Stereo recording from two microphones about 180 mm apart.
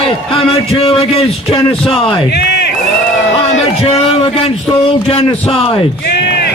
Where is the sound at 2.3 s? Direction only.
65° left (ahead or behind).